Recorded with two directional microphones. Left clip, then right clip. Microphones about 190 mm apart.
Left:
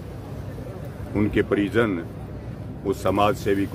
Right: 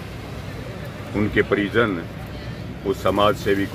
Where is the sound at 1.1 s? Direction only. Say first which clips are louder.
Right 2 dB; 20° left (ahead or behind).